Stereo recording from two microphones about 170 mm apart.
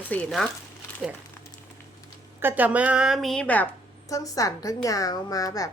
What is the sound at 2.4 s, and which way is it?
A woman's voice, 10° right (ahead or behind).